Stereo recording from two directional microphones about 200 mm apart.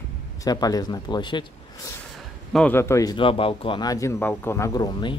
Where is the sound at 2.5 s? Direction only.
10° left (ahead or behind).